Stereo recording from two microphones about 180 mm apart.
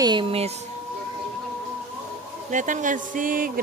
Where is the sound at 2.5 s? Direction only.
45° right (ahead or behind).